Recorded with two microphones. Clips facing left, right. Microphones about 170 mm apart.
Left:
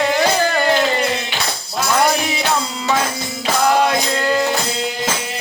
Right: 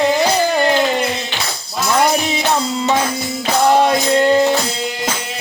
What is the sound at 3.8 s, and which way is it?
Music, 25° right (ahead or behind).